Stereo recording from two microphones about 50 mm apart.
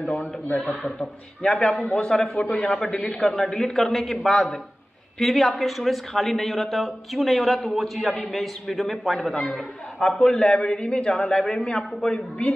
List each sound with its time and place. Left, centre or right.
0.1 s a man's voice: left
2.5 s speech: left
3.0 s a man's voice: centre
9.4 s a man's voice: centre